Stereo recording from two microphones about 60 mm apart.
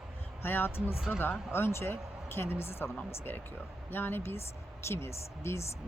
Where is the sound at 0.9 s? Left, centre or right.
Centre.